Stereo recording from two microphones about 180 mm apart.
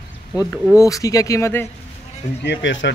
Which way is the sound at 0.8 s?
20° left (ahead or behind).